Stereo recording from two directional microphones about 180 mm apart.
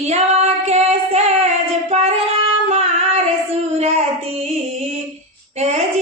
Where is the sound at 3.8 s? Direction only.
35° right (ahead or behind).